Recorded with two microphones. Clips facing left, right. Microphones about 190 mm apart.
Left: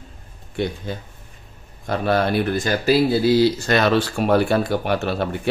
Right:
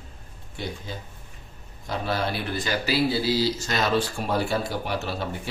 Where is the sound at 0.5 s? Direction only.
65° left (ahead or behind).